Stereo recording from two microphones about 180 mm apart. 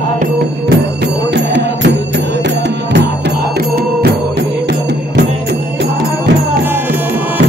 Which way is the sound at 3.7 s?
60° right (ahead or behind).